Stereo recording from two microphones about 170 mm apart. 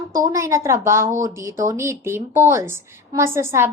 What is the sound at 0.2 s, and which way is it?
A woman's voice, 20° right (ahead or behind).